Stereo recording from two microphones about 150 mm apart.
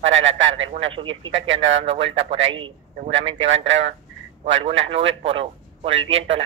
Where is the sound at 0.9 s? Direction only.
35° right (ahead or behind).